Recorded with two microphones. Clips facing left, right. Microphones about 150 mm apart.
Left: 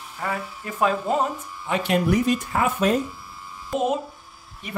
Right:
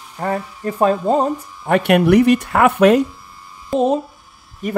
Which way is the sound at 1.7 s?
65° right (ahead or behind).